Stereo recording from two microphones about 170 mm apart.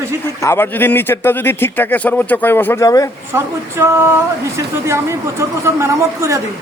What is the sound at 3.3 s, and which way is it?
Speech, 15° right (ahead or behind).